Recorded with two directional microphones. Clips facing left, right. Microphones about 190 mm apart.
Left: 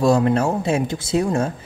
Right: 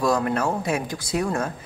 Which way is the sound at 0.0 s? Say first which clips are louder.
Left 5 dB; 25° left (ahead or behind).